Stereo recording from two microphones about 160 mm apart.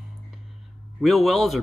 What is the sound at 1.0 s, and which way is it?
Speech, centre (ahead or behind).